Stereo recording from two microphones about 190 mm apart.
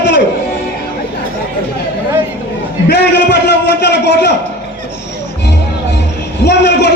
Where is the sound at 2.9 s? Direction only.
60° left (ahead or behind).